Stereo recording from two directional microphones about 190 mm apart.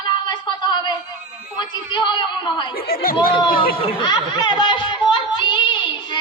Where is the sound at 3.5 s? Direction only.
50° left (ahead or behind).